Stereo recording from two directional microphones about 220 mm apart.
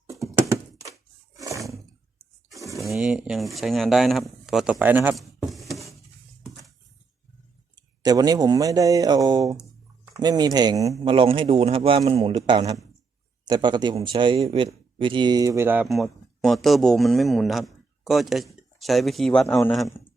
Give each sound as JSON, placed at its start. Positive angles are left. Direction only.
{"t": 0.1, "sound": "thunk", "side_deg": -15}
{"t": 1.4, "sound": "a sound", "side_deg": -15}
{"t": 2.7, "sound": "speech", "side_deg": 0}
{"t": 7.8, "sound": "a man's voice", "side_deg": -15}